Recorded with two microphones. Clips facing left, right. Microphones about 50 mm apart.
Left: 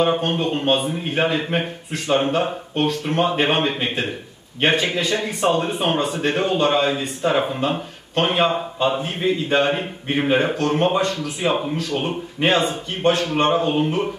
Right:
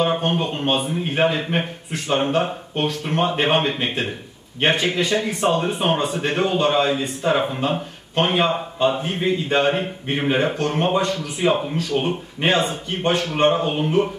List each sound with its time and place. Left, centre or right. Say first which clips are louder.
0.1 s speech: left 1 dB; centre